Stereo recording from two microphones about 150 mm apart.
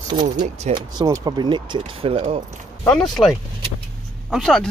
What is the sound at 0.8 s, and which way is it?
Speech, 30° right (ahead or behind).